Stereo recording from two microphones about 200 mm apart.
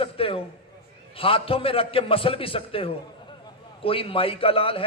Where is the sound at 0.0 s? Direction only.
30° left (ahead or behind).